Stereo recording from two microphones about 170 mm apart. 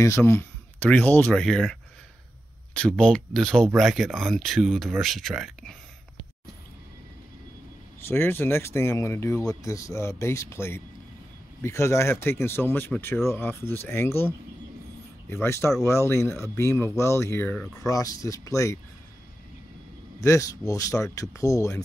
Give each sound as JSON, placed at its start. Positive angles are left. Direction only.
{"t": 0.0, "sound": "speech", "side_deg": 15}
{"t": 8.1, "sound": "speech", "side_deg": 10}
{"t": 15.4, "sound": "speech", "side_deg": 15}
{"t": 20.2, "sound": "speech", "side_deg": 20}